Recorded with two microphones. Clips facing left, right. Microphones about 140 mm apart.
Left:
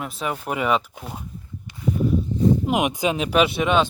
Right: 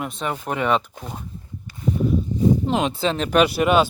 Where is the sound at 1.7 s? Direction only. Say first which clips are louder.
Right 1 dB; 20° left (ahead or behind).